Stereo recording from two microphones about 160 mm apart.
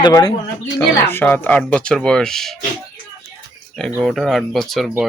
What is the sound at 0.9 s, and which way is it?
A man's voice, 15° left (ahead or behind).